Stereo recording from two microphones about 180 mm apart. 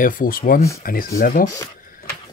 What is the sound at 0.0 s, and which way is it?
Speech, 50° left (ahead or behind).